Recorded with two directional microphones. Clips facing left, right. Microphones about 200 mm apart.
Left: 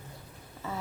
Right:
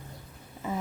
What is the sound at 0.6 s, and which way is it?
Speech, 15° right (ahead or behind).